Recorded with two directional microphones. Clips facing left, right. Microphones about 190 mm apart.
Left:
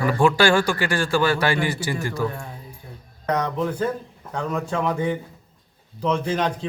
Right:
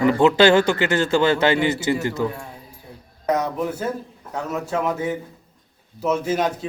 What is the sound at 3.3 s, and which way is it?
Speech, 10° right (ahead or behind).